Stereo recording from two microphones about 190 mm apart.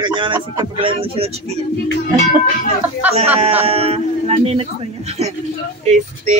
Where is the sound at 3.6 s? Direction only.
30° right (ahead or behind).